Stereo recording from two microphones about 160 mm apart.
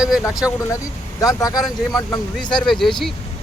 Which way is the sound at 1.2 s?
20° left (ahead or behind).